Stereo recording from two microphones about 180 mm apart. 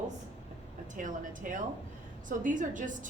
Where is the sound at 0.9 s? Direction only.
45° right (ahead or behind).